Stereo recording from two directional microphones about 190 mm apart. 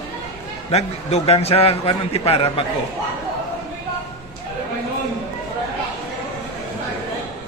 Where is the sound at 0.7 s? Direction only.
35° left (ahead or behind).